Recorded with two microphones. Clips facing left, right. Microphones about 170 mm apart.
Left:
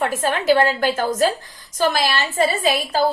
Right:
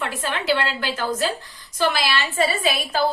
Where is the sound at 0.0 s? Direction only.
45° left (ahead or behind).